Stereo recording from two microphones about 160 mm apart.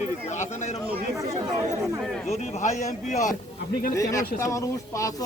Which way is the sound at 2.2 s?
45° left (ahead or behind).